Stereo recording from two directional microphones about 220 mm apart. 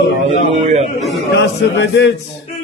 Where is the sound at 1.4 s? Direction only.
55° left (ahead or behind).